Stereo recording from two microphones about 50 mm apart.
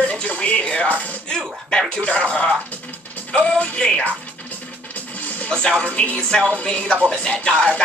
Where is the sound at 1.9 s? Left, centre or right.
Left.